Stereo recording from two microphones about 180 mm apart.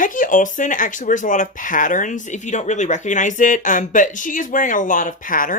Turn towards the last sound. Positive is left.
turn(degrees=50)  # may be behind; listen again after turning